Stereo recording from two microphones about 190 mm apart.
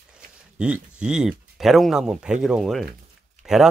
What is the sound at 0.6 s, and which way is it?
Speech, 5° right (ahead or behind).